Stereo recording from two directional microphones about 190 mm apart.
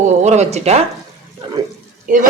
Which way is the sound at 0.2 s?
35° right (ahead or behind).